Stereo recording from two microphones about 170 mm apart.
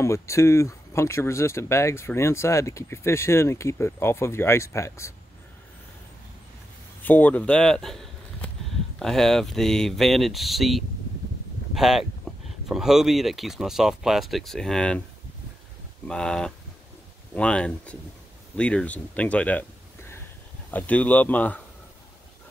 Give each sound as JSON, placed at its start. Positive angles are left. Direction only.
{"t": 0.0, "sound": "speech", "side_deg": 15}
{"t": 7.0, "sound": "speech", "side_deg": 10}
{"t": 16.1, "sound": "speech", "side_deg": 5}